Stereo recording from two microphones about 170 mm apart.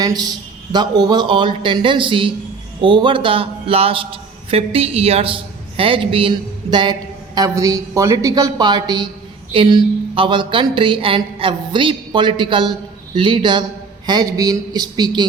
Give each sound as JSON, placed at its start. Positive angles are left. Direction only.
{"t": 0.0, "sound": "a woman's voice", "side_deg": -25}